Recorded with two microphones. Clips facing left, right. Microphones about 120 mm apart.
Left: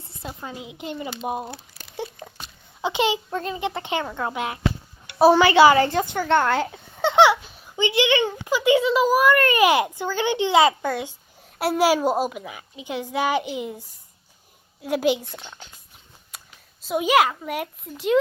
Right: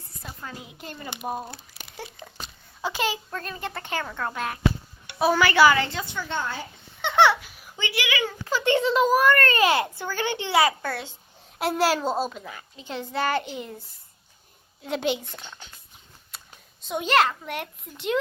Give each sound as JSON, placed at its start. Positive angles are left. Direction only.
{"t": 0.2, "sound": "a child's voice", "side_deg": 20}
{"t": 2.8, "sound": "speech", "side_deg": 20}
{"t": 5.2, "sound": "speech", "side_deg": 30}
{"t": 5.8, "sound": "a woman's voice", "side_deg": 50}
{"t": 7.0, "sound": "a sound", "side_deg": 35}
{"t": 7.4, "sound": "speech", "side_deg": 20}
{"t": 8.4, "sound": "a child's voice", "side_deg": 10}
{"t": 16.8, "sound": "a child's voice", "side_deg": 5}